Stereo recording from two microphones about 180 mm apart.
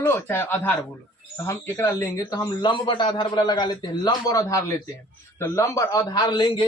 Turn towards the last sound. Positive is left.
turn(degrees=25)  # may be behind; listen again after turning